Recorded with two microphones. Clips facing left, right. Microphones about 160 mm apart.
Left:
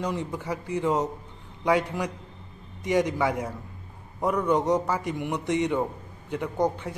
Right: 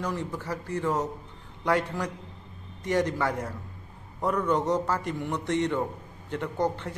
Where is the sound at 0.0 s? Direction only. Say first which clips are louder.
Left 2 dB; 15° left (ahead or behind).